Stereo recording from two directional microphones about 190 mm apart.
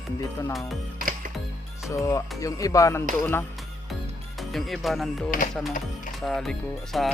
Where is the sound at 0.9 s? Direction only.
45° right (ahead or behind).